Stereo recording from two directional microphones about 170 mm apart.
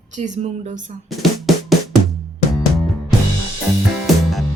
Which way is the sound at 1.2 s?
Centre (ahead or behind).